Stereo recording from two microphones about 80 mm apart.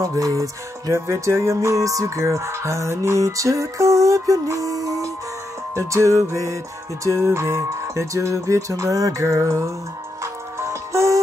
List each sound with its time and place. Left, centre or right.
0.0 s music: right